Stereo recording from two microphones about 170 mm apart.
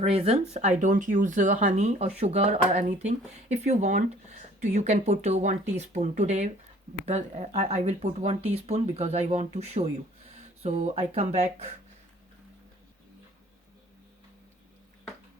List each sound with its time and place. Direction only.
0.0 s speech: 35° right (ahead or behind)